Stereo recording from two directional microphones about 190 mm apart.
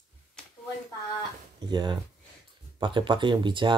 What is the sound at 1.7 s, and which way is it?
Speech, 25° right (ahead or behind).